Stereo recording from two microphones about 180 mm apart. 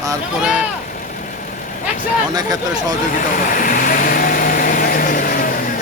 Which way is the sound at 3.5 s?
50° left (ahead or behind).